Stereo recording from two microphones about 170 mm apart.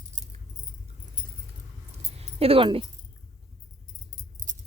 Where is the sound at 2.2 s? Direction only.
35° right (ahead or behind).